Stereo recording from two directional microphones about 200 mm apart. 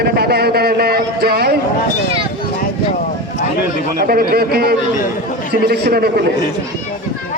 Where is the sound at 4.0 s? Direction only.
50° right (ahead or behind).